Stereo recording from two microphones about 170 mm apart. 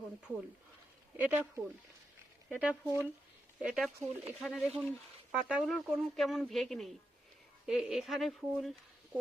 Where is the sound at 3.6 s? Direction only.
5° right (ahead or behind).